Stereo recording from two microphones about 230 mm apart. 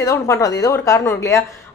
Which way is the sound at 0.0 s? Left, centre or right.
Centre.